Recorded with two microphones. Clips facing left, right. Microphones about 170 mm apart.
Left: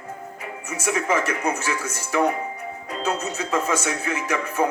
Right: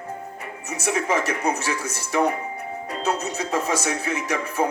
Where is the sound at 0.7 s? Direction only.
35° right (ahead or behind).